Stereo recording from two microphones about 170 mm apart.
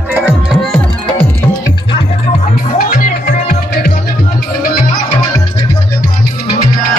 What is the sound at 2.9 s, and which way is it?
Music, 55° left (ahead or behind).